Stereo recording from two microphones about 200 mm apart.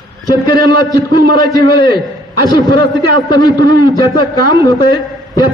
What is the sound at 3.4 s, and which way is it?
A man's voice, 20° left (ahead or behind).